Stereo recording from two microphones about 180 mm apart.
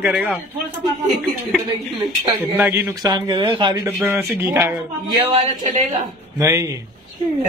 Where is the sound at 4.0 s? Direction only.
10° right (ahead or behind).